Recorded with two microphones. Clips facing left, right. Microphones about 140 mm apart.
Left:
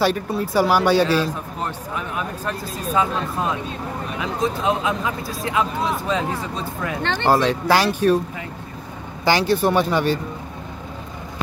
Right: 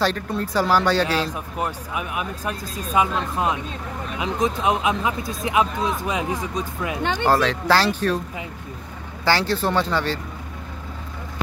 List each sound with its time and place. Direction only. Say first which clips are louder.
0.0 s speech: left 3 dB; 10° left (ahead or behind)
1.3 s speech: right 1 dB; 10° right (ahead or behind)
7.2 s speech: left 2 dB; 15° left (ahead or behind)
9.2 s speech: left 3 dB; 15° left (ahead or behind)